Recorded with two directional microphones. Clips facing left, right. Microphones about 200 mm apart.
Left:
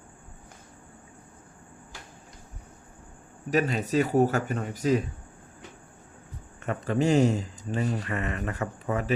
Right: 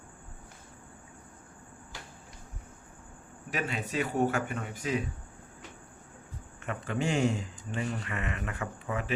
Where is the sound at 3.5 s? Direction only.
40° left (ahead or behind).